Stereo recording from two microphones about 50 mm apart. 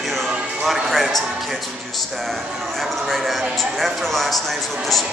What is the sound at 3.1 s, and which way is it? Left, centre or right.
A man's voice, centre.